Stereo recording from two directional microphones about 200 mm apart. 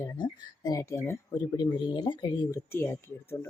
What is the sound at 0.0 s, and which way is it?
Speech, 20° left (ahead or behind).